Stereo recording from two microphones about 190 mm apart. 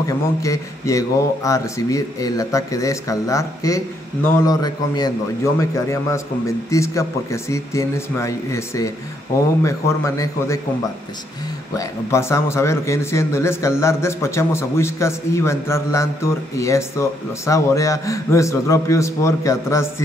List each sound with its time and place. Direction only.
0.0 s a man's voice: 15° left (ahead or behind)
11.7 s a man's voice: 15° left (ahead or behind)